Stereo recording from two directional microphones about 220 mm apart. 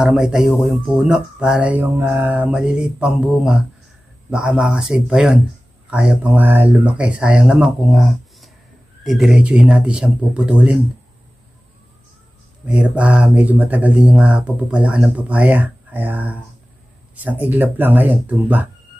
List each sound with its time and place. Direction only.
0.0 s speech: 5° right (ahead or behind)
12.6 s speech: 5° right (ahead or behind)